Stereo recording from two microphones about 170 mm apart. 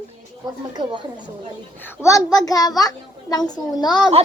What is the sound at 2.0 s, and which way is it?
A child's voice, 20° left (ahead or behind).